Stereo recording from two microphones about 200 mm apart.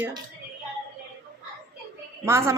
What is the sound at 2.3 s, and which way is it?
Speech, 15° right (ahead or behind).